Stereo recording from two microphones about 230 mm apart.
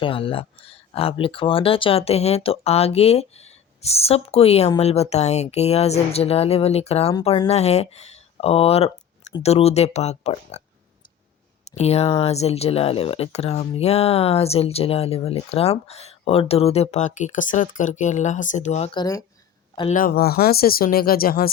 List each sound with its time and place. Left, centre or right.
0.0 s speech: left
11.6 s speech: left
19.9 s speech: left